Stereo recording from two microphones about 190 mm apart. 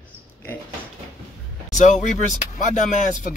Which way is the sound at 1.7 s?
40° left (ahead or behind).